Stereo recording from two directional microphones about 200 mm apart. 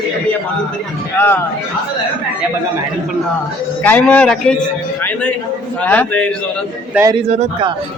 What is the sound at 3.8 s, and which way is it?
Speech, 5° left (ahead or behind).